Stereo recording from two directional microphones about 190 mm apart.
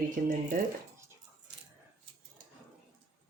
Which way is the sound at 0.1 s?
45° right (ahead or behind).